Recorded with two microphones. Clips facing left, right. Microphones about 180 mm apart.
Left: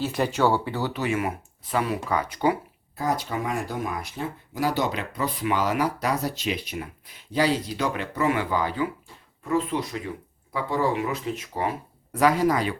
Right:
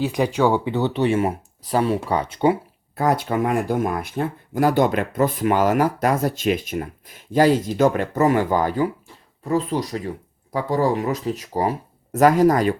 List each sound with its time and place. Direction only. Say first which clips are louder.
0.0 s speech: right 4 dB; 15° right (ahead or behind)
2.9 s speech: right 6 dB; 60° right (ahead or behind); by 12.7 s 45° right (ahead or behind)